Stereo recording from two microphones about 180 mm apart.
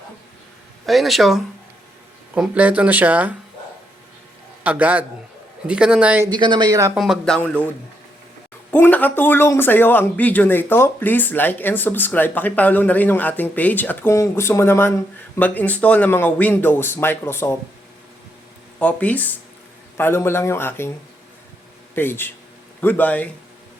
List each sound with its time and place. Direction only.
0.9 s speech: centre (ahead or behind)
4.6 s speech: 10° right (ahead or behind)
6.3 s speech: 25° right (ahead or behind)
6.9 s speech: centre (ahead or behind)
8.7 s speech: 10° left (ahead or behind)
18.8 s speech: 10° left (ahead or behind)
21.9 s speech: 10° left (ahead or behind)